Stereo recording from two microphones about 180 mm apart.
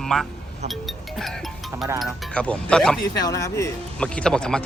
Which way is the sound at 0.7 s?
Centre (ahead or behind).